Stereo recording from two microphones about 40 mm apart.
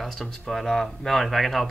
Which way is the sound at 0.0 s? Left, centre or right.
Centre.